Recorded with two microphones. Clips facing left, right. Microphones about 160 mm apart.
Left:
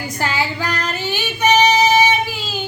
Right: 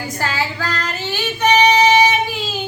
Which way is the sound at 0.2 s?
15° left (ahead or behind).